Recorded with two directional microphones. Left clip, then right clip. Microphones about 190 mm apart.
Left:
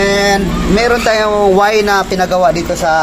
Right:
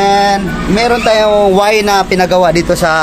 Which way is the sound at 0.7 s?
20° right (ahead or behind).